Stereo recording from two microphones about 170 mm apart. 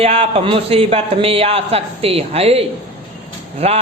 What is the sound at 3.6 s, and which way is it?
Speech, 35° right (ahead or behind).